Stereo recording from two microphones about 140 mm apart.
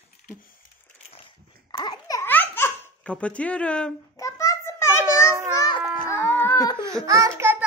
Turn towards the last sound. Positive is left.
turn(degrees=-20)  # may be behind; listen again after turning